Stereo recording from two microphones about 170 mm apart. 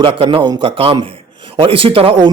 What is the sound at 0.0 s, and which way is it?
Speech, 30° right (ahead or behind).